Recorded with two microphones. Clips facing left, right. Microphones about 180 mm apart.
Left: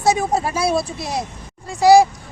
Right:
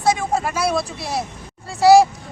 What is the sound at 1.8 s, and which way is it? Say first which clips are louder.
Speech: even; 10° left (ahead or behind).